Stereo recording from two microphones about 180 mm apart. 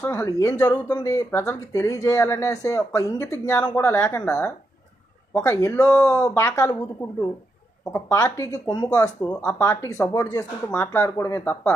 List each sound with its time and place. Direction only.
0.0 s speech: 15° left (ahead or behind)
9.2 s speech: 5° left (ahead or behind)